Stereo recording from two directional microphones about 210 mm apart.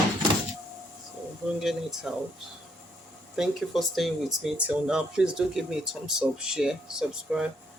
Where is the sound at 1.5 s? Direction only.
Centre (ahead or behind).